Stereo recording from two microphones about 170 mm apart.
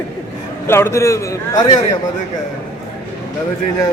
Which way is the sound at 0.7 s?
15° left (ahead or behind).